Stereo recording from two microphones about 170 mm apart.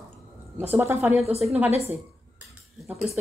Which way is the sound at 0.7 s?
15° right (ahead or behind).